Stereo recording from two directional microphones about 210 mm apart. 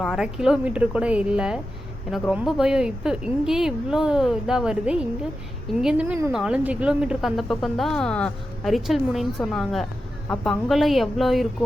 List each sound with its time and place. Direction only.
0.0 s a woman's voice: centre (ahead or behind)